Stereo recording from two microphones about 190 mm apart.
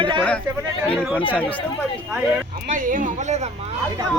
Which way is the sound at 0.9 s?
5° left (ahead or behind).